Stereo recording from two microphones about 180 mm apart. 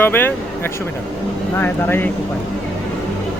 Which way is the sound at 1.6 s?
10° left (ahead or behind).